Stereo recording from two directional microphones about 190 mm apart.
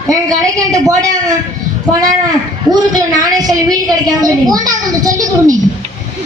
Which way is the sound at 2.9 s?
20° right (ahead or behind).